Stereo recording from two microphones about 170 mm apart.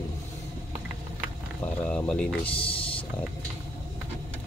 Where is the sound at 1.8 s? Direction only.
5° left (ahead or behind).